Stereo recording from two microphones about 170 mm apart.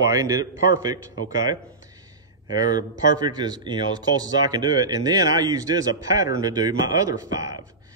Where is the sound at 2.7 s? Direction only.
25° right (ahead or behind).